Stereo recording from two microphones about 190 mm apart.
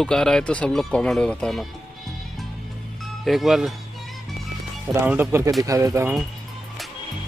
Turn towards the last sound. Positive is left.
turn(degrees=-15)  # may be behind; listen again after turning